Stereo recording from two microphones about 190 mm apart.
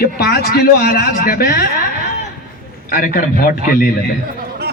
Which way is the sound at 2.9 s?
45° left (ahead or behind).